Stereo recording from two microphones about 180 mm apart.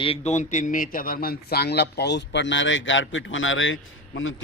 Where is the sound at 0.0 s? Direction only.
35° left (ahead or behind).